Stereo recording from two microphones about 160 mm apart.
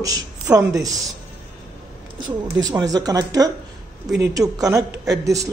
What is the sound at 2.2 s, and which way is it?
Speech, 25° right (ahead or behind).